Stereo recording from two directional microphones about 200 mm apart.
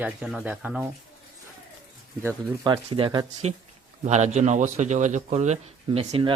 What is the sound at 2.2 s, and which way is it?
Speech, 15° right (ahead or behind).